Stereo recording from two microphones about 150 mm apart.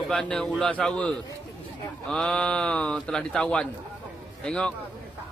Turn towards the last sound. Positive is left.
turn(degrees=5)  # may be behind; listen again after turning